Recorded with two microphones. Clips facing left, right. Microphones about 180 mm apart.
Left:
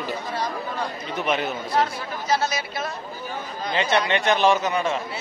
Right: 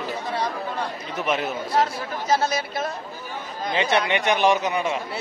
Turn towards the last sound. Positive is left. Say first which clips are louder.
# even
turn(degrees=-15)  # may be behind; listen again after turning